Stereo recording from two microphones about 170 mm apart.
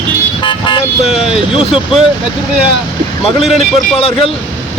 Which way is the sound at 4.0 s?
35° left (ahead or behind).